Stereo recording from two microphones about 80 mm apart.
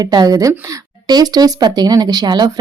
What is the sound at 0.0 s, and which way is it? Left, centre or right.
Speech, right.